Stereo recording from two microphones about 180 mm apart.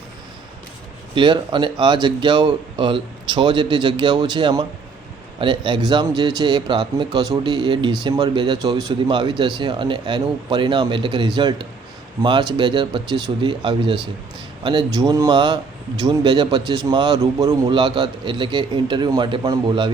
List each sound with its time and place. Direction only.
1.1 s a man's voice: 25° right (ahead or behind)